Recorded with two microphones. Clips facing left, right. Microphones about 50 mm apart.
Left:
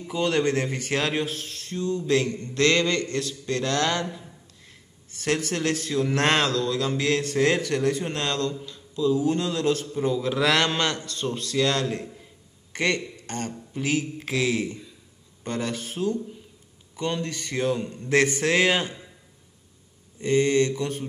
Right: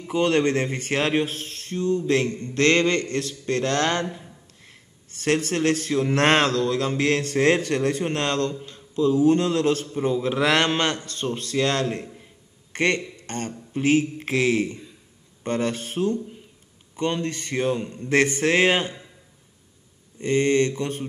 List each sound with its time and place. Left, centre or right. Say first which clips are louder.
0.1 s speech: right 3 dB; right
9.9 s a man's voice: right 2 dB; right
18.1 s a man's voice: right 1 dB; right
20.2 s speech: right 1 dB; right